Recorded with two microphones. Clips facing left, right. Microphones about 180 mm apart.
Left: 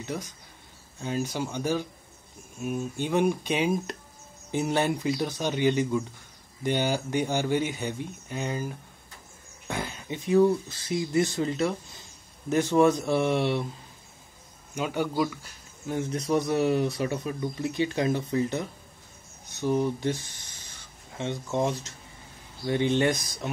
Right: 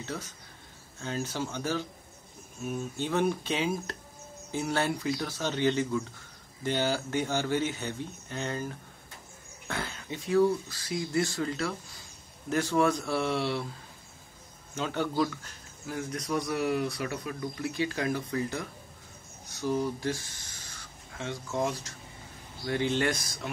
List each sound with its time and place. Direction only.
0.0 s speech: 15° left (ahead or behind)
14.8 s speech: 10° left (ahead or behind)
15.9 s speech: 25° left (ahead or behind)